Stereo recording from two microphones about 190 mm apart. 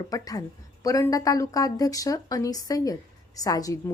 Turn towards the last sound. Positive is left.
turn(degrees=20)  # may be behind; listen again after turning